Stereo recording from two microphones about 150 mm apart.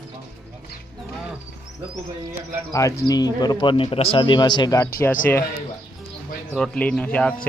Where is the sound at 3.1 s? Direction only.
25° left (ahead or behind).